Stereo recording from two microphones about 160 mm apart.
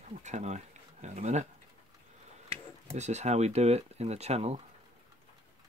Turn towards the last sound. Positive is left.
turn(degrees=-40)  # may be behind; listen again after turning